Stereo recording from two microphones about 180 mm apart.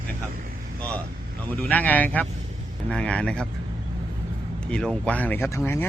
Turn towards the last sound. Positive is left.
turn(degrees=10)  # may be behind; listen again after turning